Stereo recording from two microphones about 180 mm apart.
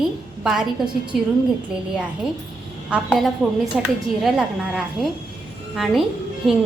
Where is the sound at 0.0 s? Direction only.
5° right (ahead or behind).